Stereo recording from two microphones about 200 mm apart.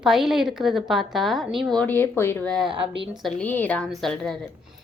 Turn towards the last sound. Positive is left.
turn(degrees=5)  # may be behind; listen again after turning